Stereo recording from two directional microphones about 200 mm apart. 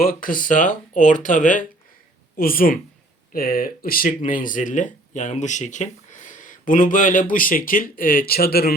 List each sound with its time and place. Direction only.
0.0 s speech: 45° left (ahead or behind)